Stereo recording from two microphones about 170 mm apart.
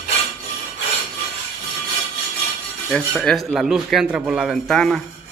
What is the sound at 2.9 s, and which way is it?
A man's voice, 5° left (ahead or behind).